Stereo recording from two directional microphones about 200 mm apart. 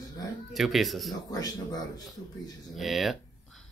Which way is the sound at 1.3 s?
20° left (ahead or behind).